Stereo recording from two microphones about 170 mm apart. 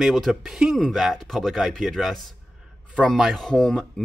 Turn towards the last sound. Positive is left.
turn(degrees=5)  # may be behind; listen again after turning